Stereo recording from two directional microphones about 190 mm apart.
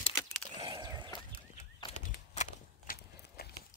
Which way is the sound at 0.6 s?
20° right (ahead or behind).